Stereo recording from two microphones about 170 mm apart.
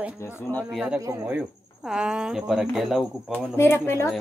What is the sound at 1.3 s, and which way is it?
Speech, 5° right (ahead or behind).